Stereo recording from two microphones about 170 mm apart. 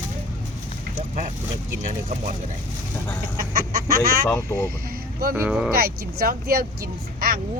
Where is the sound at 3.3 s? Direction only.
60° right (ahead or behind).